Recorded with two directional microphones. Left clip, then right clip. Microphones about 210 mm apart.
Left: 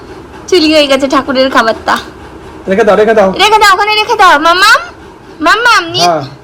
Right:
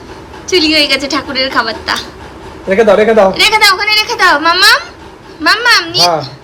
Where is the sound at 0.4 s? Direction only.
Centre (ahead or behind).